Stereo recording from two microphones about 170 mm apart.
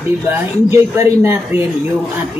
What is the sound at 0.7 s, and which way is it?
Speech, 15° right (ahead or behind).